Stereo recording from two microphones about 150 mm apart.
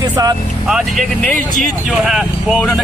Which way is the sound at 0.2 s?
25° right (ahead or behind).